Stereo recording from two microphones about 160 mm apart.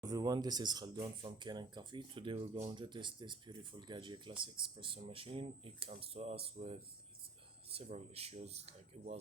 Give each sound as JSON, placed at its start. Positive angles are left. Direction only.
{"t": 0.0, "sound": "speech", "side_deg": -25}